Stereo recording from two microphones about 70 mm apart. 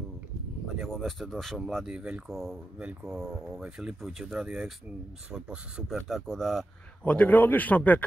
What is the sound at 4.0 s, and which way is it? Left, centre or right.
Speech, centre.